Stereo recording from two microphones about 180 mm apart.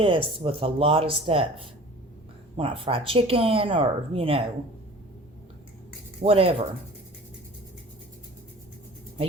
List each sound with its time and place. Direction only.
0.0 s speech: 30° right (ahead or behind)
2.6 s speech: 30° right (ahead or behind)
6.2 s speech: 35° right (ahead or behind)